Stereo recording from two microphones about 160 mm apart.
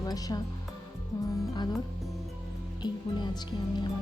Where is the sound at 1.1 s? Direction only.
20° left (ahead or behind).